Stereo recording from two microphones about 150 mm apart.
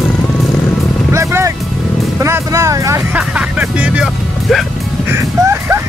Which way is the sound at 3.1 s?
10° right (ahead or behind).